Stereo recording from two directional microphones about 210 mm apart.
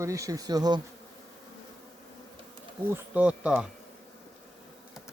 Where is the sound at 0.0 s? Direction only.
15° right (ahead or behind).